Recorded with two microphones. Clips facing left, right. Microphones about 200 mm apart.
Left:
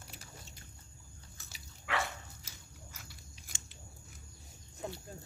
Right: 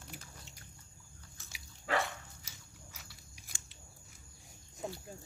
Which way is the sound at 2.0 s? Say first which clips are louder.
Right 1 dB; centre (ahead or behind).